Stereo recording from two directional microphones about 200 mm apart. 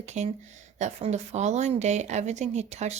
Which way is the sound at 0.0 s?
35° right (ahead or behind).